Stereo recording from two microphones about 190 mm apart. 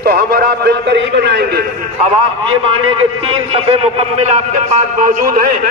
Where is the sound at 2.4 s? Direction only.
30° right (ahead or behind).